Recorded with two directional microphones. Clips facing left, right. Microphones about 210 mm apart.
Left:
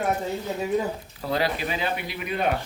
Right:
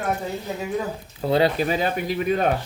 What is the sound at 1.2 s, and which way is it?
Speech, 25° right (ahead or behind).